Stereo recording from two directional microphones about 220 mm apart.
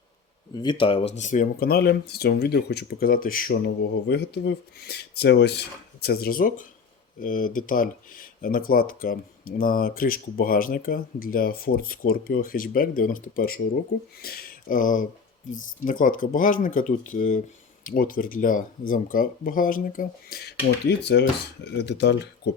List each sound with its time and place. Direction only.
0.5 s speech: 20° left (ahead or behind); by 22.5 s 50° left (ahead or behind)